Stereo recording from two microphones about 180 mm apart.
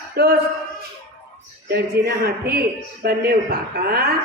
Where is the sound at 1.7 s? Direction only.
60° right (ahead or behind).